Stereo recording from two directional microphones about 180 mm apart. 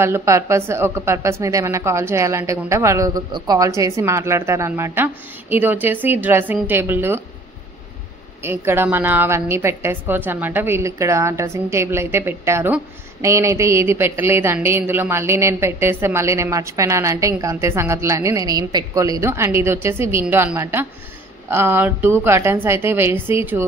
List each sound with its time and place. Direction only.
0.0 s a woman's voice: 15° right (ahead or behind)
8.4 s a woman's voice: 15° right (ahead or behind)